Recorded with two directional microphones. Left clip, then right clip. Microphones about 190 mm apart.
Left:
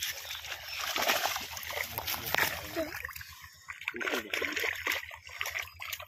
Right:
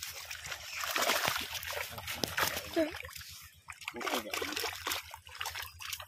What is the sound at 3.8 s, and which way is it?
Splash, 20° right (ahead or behind).